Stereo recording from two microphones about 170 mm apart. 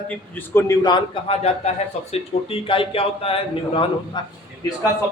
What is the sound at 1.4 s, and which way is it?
Speech, 40° left (ahead or behind).